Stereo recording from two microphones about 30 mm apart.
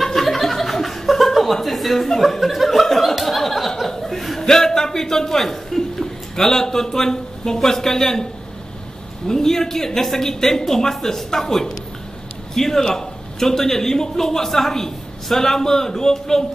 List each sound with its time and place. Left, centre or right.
0.0 s chuckle: centre
4.4 s speech: centre
9.3 s speech: centre